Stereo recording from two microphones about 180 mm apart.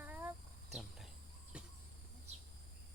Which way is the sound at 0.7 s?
Centre (ahead or behind).